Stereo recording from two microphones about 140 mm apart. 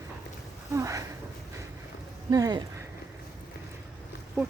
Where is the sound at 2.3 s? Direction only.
30° right (ahead or behind).